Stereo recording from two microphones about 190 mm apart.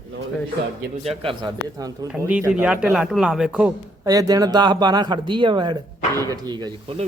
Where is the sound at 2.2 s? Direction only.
5° right (ahead or behind).